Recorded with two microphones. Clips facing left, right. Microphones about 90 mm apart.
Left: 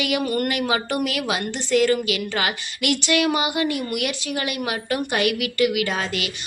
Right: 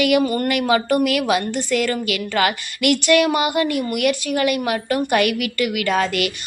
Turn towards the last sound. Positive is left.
turn(degrees=-50)  # may be behind; listen again after turning